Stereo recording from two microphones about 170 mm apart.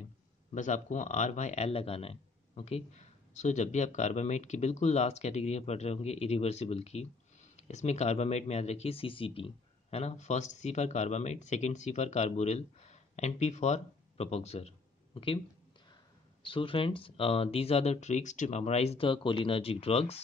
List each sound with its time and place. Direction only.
0.6 s speech: 45° left (ahead or behind)
16.4 s speech: 30° left (ahead or behind)